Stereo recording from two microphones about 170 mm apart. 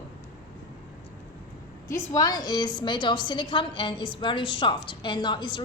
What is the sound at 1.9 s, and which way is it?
A woman's voice, 20° left (ahead or behind).